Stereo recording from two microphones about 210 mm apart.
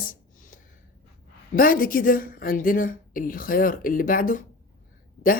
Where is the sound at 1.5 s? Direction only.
40° left (ahead or behind).